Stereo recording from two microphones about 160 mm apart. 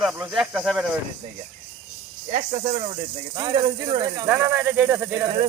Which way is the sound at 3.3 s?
25° right (ahead or behind).